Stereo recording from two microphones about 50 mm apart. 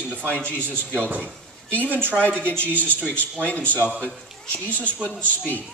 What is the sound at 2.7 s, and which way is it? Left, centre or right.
Speech, left.